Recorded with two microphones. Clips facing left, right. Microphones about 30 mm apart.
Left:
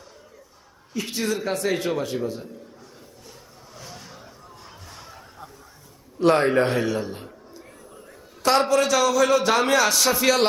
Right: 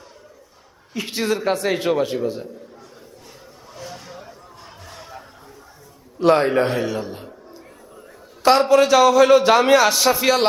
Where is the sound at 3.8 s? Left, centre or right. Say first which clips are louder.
Right 6 dB; right.